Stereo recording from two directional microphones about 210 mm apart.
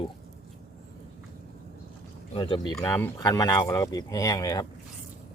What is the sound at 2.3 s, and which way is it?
Speech, 25° left (ahead or behind).